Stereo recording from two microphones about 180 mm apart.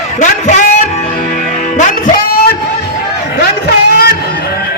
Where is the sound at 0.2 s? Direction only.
40° left (ahead or behind).